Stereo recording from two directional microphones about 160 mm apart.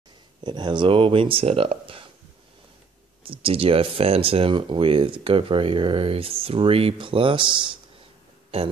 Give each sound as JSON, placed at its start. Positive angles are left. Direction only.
{"t": 0.4, "sound": "speech", "side_deg": -30}
{"t": 3.3, "sound": "speech", "side_deg": -35}